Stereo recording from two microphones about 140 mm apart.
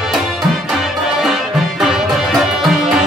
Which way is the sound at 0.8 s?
Centre (ahead or behind).